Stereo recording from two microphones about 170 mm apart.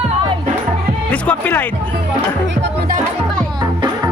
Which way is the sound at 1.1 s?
10° left (ahead or behind).